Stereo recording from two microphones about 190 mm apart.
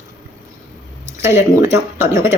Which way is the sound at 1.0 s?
15° right (ahead or behind).